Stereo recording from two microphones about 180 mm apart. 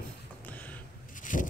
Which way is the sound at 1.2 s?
45° left (ahead or behind).